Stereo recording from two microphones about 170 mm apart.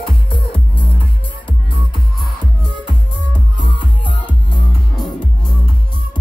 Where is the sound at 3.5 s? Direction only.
30° left (ahead or behind).